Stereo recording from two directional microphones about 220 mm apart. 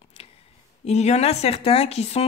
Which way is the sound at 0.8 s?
30° left (ahead or behind).